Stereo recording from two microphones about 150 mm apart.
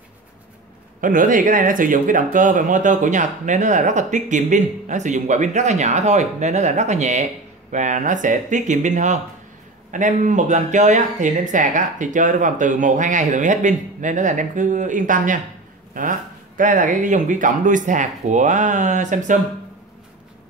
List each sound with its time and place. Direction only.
1.0 s speech: 65° right (ahead or behind)